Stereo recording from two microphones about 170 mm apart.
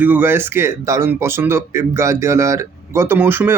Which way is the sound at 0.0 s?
10° right (ahead or behind).